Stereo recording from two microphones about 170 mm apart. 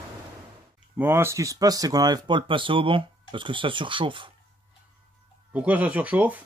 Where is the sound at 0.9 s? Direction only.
15° right (ahead or behind); by 4.3 s 30° right (ahead or behind).